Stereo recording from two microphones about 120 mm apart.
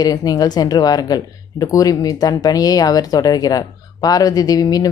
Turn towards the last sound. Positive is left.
turn(degrees=30)  # may be behind; listen again after turning